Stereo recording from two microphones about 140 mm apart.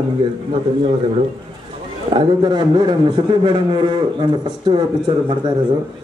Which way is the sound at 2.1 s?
30° right (ahead or behind).